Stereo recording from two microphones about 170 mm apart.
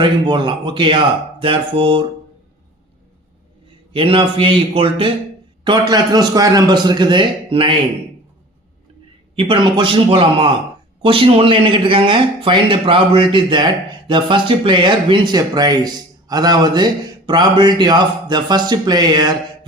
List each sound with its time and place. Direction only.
0.0 s speech: 25° right (ahead or behind)
3.9 s a man's voice: 30° right (ahead or behind)
9.3 s a man's voice: 30° right (ahead or behind)